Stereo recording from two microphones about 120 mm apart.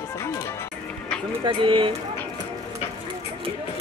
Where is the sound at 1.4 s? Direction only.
45° right (ahead or behind).